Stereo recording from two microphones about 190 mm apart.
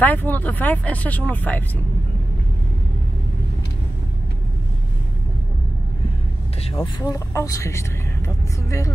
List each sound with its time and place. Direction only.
0.0 s speech: 10° left (ahead or behind)
6.8 s speech: 15° left (ahead or behind)